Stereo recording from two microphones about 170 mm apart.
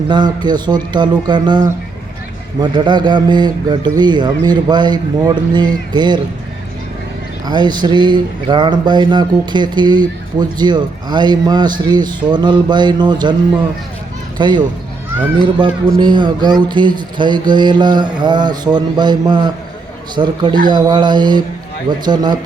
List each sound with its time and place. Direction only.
0.1 s speech: 25° right (ahead or behind)
7.4 s speech: 25° right (ahead or behind)
14.3 s speech: 25° right (ahead or behind)
15.6 s speech: 25° right (ahead or behind)